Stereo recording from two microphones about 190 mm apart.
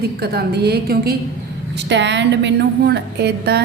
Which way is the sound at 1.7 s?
70° right (ahead or behind).